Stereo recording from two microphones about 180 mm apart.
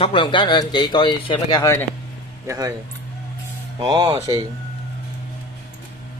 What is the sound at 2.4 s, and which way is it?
Speech, 20° right (ahead or behind).